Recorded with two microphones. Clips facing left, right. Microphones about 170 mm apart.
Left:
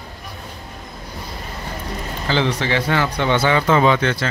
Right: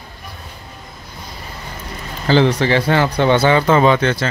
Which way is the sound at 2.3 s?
40° right (ahead or behind).